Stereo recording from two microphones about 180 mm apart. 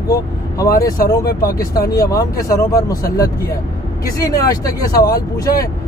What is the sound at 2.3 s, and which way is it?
Speech, 15° left (ahead or behind).